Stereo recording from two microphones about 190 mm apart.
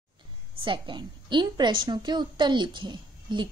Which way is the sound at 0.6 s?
25° right (ahead or behind).